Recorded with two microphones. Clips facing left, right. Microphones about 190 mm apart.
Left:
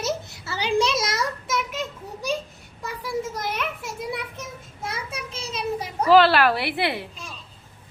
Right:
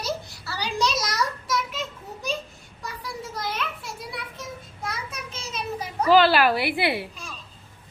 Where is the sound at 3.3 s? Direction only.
20° left (ahead or behind).